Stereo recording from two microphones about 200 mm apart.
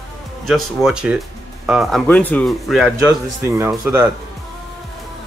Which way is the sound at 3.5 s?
15° right (ahead or behind).